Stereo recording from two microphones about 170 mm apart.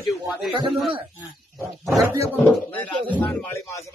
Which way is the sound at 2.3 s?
10° left (ahead or behind).